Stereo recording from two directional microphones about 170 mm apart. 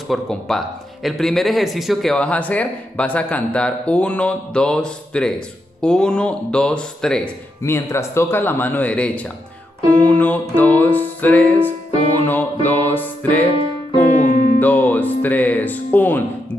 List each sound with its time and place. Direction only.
0.1 s speech: centre (ahead or behind)
7.6 s speech: 15° left (ahead or behind)
9.9 s music: 10° left (ahead or behind)
10.5 s speech: 10° left (ahead or behind)
14.0 s music: 50° left (ahead or behind)
14.6 s speech: 10° left (ahead or behind)